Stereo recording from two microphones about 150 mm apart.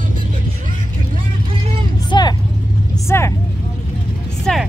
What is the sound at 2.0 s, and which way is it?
Vehicle, 30° left (ahead or behind).